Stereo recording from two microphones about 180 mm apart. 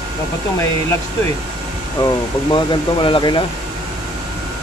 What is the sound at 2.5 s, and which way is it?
Speech, 30° left (ahead or behind).